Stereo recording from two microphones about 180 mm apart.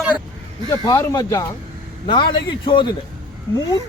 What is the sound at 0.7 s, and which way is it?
Speech, 20° left (ahead or behind).